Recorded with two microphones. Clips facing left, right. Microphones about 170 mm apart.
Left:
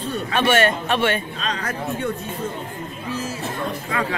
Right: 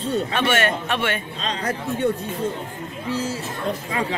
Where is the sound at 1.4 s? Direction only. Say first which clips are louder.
Right 1 dB; 30° right (ahead or behind).